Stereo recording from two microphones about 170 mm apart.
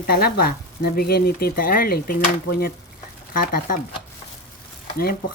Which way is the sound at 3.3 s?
55° left (ahead or behind).